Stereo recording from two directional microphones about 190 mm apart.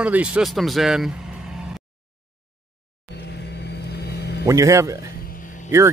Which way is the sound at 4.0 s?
60° left (ahead or behind).